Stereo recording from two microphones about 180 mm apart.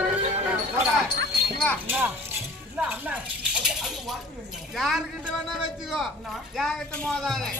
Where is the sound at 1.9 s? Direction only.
10° right (ahead or behind).